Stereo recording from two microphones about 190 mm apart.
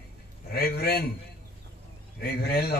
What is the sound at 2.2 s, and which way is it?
Speech, 55° left (ahead or behind).